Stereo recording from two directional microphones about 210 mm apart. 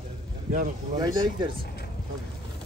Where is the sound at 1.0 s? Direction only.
20° right (ahead or behind).